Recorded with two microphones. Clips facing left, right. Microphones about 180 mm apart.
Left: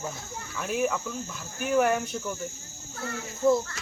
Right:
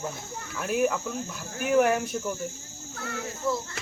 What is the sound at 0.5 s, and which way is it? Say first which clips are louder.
Speech: right 2 dB; 5° right (ahead or behind).